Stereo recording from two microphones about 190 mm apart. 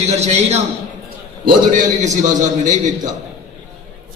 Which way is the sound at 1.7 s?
40° right (ahead or behind).